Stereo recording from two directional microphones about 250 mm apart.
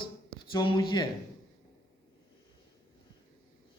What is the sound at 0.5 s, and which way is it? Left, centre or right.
Speech, centre.